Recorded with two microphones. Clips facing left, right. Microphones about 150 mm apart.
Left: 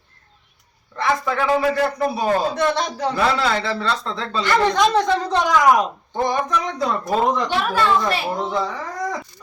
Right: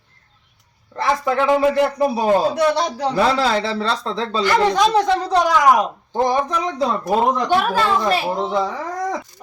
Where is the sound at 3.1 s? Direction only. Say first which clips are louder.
Right 3 dB; 30° right (ahead or behind).